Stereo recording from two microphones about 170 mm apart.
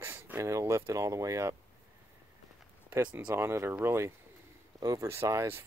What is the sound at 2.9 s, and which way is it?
Speech, 10° right (ahead or behind).